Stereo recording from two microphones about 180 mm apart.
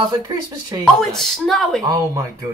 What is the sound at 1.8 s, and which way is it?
Speech, 20° right (ahead or behind).